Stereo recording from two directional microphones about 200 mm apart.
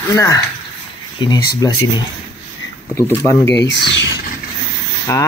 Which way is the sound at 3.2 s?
15° left (ahead or behind).